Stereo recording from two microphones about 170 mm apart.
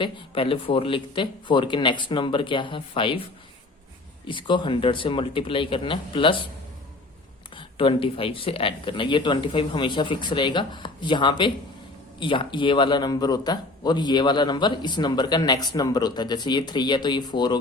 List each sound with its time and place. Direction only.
0.0 s a man's voice: 30° left (ahead or behind)
4.3 s speech: 30° left (ahead or behind)
7.5 s a man's voice: 30° left (ahead or behind)